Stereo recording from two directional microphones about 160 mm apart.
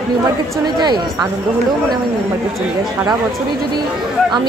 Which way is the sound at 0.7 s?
25° right (ahead or behind).